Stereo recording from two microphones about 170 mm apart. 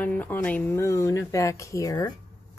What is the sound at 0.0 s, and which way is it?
A woman's voice, 10° left (ahead or behind).